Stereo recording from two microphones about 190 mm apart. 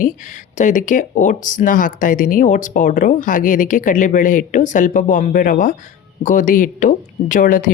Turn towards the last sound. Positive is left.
turn(degrees=45)  # may be behind; listen again after turning